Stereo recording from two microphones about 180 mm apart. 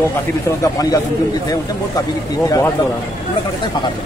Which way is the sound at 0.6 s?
20° left (ahead or behind).